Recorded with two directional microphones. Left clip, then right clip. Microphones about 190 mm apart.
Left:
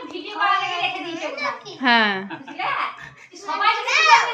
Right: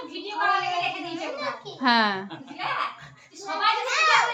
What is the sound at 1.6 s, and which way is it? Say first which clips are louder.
Speech: left 4 dB; 10° left (ahead or behind).